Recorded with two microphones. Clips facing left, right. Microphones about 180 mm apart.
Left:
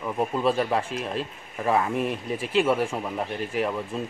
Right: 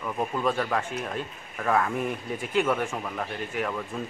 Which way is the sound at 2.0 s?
30° left (ahead or behind).